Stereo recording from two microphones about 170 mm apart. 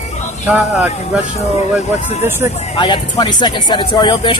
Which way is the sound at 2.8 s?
25° left (ahead or behind).